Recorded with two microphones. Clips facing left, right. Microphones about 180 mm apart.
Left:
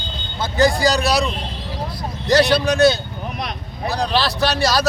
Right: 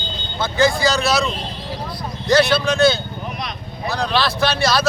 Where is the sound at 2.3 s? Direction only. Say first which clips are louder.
Even; 40° left (ahead or behind).